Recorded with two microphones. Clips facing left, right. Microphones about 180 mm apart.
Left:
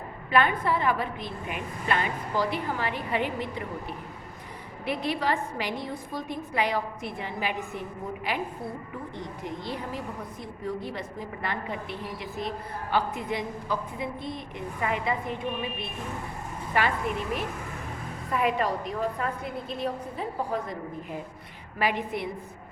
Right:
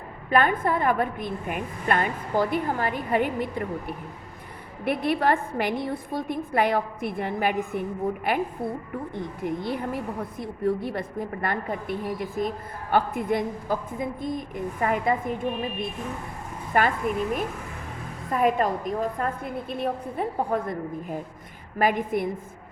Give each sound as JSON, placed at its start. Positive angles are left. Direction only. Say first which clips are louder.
{"t": 0.3, "sound": "a woman's voice", "louder": "right 2 dB", "side_deg": -45}
{"t": 4.9, "sound": "a woman's voice", "louder": "right 5 dB", "side_deg": -55}
{"t": 19.7, "sound": "a woman's voice", "louder": "right 4 dB", "side_deg": -55}